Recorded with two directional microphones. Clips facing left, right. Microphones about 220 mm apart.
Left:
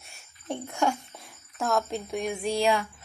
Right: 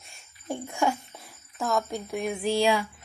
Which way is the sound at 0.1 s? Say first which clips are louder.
Even; 5° right (ahead or behind).